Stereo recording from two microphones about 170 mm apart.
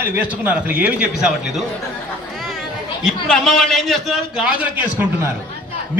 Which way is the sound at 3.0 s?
5° left (ahead or behind).